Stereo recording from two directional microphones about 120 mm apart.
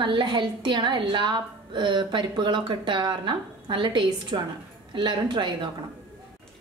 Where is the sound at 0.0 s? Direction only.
40° right (ahead or behind).